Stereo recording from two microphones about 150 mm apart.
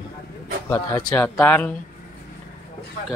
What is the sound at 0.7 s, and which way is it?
Speech, 15° left (ahead or behind).